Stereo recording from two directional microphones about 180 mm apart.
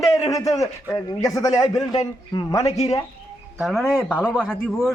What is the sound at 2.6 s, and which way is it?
Speech, 35° left (ahead or behind).